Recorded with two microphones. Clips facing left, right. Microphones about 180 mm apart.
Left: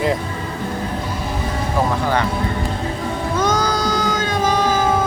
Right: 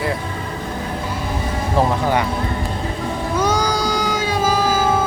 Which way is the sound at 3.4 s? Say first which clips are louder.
Even; 10° right (ahead or behind).